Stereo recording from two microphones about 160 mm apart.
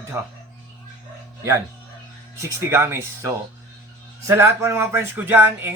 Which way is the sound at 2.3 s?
15° right (ahead or behind).